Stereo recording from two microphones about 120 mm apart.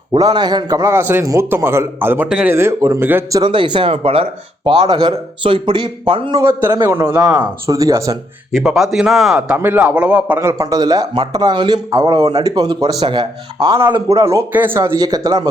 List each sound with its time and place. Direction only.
0.1 s a man's voice: 35° right (ahead or behind); by 3.2 s 20° right (ahead or behind)
3.3 s speech: 40° right (ahead or behind)
6.4 s a man's voice: 20° right (ahead or behind)
7.4 s a man's voice: 30° right (ahead or behind)
8.5 s speech: 5° right (ahead or behind)
9.6 s a man's voice: 15° right (ahead or behind)
10.4 s a man's voice: 30° right (ahead or behind)
14.9 s speech: 30° right (ahead or behind)